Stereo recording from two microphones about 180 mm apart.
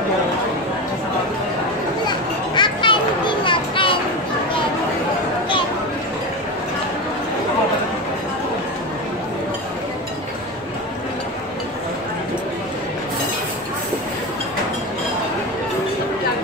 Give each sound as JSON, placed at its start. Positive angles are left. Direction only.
{"t": 2.0, "sound": "children playing", "side_deg": 25}